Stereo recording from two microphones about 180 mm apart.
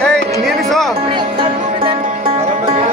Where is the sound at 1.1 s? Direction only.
30° right (ahead or behind).